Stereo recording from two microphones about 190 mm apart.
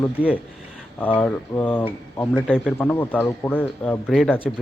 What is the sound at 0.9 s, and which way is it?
Speech, 10° left (ahead or behind).